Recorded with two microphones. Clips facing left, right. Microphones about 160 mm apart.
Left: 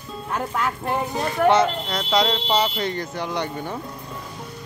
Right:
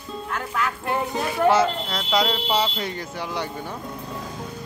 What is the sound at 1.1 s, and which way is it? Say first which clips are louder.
Speech: left 1 dB; 5° right (ahead or behind).